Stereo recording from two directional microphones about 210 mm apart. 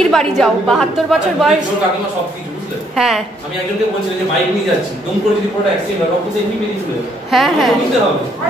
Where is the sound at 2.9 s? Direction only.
Centre (ahead or behind).